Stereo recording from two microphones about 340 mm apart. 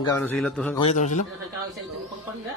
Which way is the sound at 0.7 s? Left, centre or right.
Centre.